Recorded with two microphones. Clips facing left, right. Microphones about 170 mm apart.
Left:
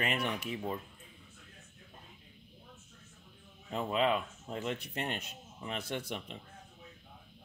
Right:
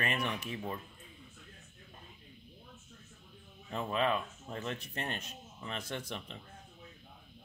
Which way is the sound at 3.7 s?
15° left (ahead or behind).